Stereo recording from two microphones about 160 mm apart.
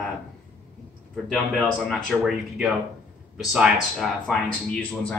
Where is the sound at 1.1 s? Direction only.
5° left (ahead or behind).